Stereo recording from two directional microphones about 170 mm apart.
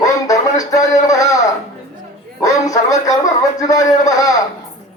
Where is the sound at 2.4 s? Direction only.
20° left (ahead or behind).